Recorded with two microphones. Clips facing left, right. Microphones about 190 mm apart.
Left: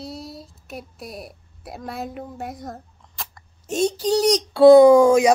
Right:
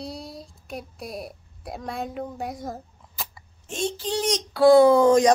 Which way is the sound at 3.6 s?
40° left (ahead or behind).